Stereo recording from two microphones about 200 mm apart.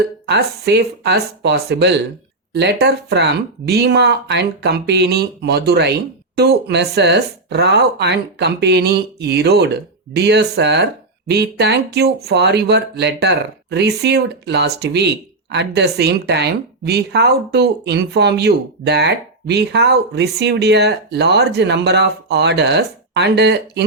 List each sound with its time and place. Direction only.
0.3 s speech: 55° right (ahead or behind)